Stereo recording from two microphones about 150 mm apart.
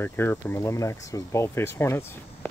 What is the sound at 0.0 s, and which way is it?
Speech, 15° left (ahead or behind).